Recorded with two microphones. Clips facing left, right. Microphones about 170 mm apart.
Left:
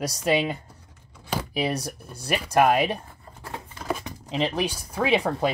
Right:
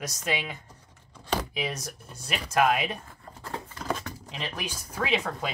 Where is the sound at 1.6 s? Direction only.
30° left (ahead or behind).